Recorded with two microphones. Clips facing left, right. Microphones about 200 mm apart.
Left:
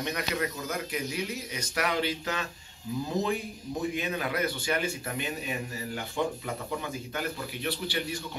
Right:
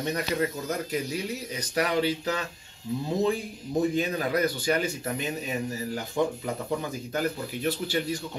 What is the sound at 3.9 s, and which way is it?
A man's voice, 40° right (ahead or behind).